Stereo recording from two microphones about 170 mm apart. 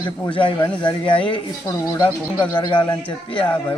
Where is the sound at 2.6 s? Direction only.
25° left (ahead or behind).